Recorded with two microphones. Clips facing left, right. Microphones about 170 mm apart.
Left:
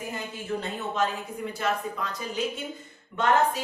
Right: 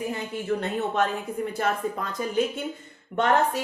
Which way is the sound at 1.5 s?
50° right (ahead or behind).